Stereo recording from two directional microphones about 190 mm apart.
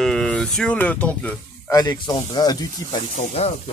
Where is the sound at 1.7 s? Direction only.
20° left (ahead or behind).